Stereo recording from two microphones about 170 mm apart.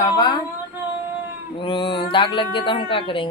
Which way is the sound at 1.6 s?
30° left (ahead or behind).